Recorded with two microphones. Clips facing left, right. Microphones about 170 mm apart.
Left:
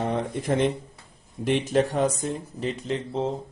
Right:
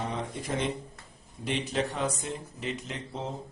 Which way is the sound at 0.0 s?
55° left (ahead or behind).